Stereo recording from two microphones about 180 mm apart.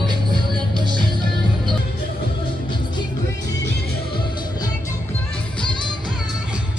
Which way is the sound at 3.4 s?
70° left (ahead or behind).